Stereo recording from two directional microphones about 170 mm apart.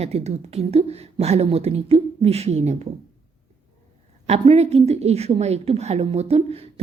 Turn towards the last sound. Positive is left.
turn(degrees=-35)  # may be behind; listen again after turning